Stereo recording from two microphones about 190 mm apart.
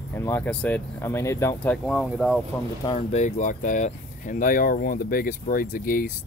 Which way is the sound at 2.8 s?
35° left (ahead or behind).